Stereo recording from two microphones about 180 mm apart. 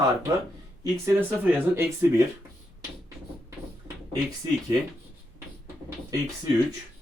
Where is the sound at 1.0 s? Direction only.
10° right (ahead or behind).